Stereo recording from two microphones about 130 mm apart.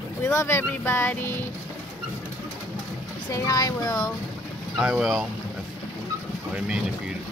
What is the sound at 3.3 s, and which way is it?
Speech, 30° left (ahead or behind).